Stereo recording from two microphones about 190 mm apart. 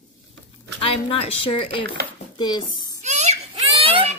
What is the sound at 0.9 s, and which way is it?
A woman's voice, 30° left (ahead or behind).